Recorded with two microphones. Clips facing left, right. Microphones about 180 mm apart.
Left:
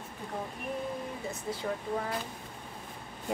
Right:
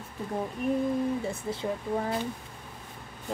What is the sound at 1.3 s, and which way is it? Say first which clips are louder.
Speech: right 3 dB; 25° right (ahead or behind).